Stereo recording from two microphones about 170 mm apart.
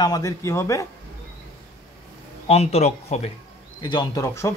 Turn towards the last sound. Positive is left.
turn(degrees=15)  # may be behind; listen again after turning